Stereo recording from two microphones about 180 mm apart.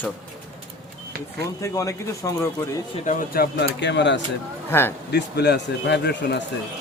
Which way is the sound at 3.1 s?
55° left (ahead or behind).